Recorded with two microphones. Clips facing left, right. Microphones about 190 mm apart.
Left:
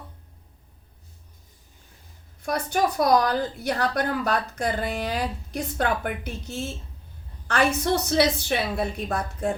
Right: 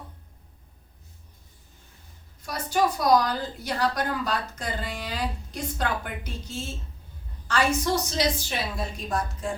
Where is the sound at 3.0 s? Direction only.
60° left (ahead or behind).